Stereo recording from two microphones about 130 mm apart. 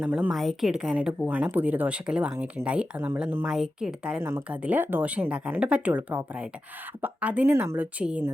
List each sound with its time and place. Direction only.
0.0 s speech: 10° right (ahead or behind)
4.2 s speech: 20° right (ahead or behind)